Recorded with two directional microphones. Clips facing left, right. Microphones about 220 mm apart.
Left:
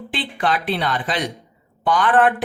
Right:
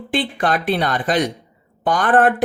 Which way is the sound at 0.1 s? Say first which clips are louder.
Right 3 dB; 45° right (ahead or behind).